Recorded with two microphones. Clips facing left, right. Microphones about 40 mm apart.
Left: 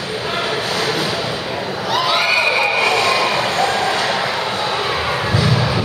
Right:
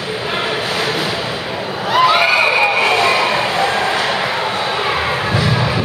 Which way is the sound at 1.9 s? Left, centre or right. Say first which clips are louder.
Right 5 dB; right.